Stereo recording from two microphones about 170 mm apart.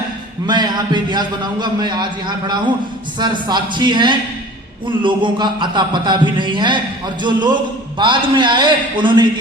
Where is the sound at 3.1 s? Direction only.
25° right (ahead or behind).